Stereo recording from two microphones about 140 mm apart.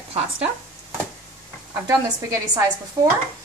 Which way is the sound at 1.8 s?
25° right (ahead or behind).